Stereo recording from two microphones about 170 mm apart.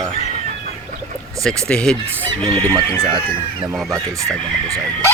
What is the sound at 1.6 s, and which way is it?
Speech, 5° left (ahead or behind).